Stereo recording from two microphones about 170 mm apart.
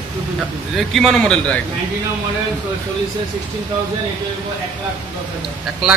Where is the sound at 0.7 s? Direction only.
Centre (ahead or behind).